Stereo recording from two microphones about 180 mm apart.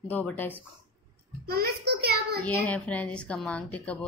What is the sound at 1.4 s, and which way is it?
Speech, 60° right (ahead or behind).